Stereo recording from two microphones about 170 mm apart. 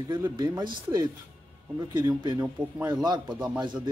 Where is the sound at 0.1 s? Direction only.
25° right (ahead or behind).